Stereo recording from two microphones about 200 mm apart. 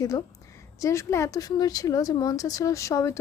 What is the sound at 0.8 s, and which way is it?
Speech, 15° left (ahead or behind).